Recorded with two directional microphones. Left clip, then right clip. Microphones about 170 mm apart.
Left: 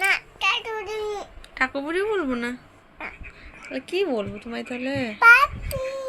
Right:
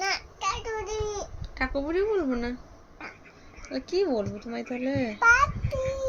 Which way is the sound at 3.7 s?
Centre (ahead or behind).